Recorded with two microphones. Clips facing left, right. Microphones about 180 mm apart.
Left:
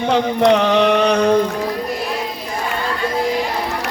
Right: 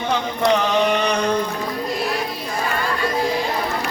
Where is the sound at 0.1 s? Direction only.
65° left (ahead or behind).